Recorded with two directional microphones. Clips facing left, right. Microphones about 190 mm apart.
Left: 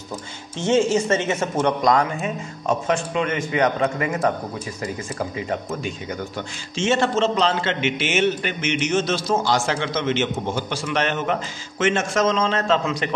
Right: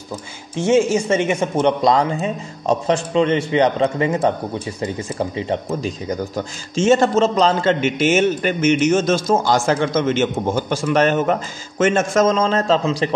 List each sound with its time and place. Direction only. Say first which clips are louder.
0.6 s a man's voice: right 3 dB; 10° right (ahead or behind); by 13.1 s 30° right (ahead or behind)